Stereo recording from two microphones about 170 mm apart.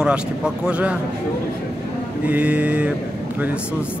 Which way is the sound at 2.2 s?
10° right (ahead or behind).